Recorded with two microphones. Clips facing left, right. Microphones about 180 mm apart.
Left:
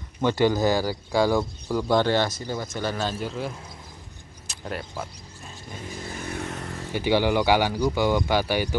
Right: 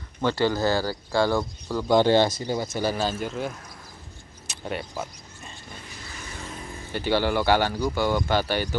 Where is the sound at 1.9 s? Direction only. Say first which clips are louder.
Right 4 dB; 20° right (ahead or behind); by 3.5 s centre (ahead or behind).